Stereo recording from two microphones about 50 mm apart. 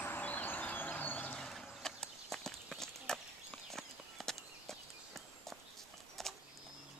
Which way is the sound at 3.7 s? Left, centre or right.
Centre.